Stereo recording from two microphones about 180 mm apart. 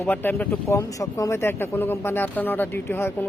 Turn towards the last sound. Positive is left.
turn(degrees=15)  # may be behind; listen again after turning